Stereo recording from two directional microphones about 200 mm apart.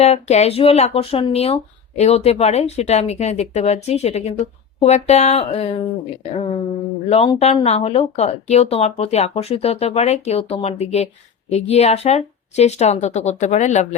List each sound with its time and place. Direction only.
0.0 s speech: 35° left (ahead or behind)